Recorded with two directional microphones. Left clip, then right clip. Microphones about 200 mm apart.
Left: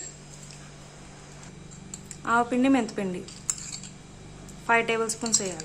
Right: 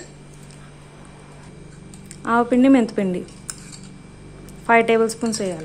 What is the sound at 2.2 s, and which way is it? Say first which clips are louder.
A woman's voice: right 6 dB; 15° right (ahead or behind).